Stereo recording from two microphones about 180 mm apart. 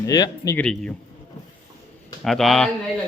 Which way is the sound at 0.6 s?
5° left (ahead or behind).